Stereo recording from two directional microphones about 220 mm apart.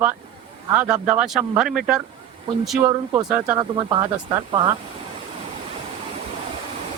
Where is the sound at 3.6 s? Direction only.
20° right (ahead or behind).